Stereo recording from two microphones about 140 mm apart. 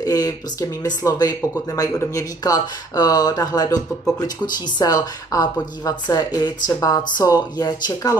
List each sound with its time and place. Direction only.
0.0 s speech: 25° left (ahead or behind)